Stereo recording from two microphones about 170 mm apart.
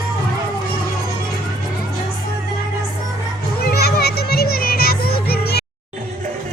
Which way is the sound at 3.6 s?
70° left (ahead or behind).